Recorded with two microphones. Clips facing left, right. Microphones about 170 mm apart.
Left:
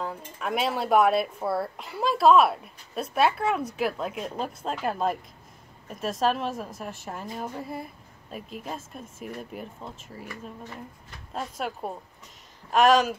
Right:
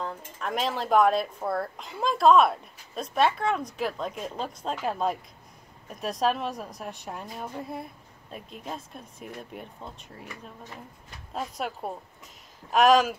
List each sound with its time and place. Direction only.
0.0 s speech: 5° left (ahead or behind)
11.3 s speech: centre (ahead or behind)